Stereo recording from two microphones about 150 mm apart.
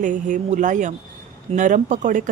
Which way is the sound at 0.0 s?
60° right (ahead or behind).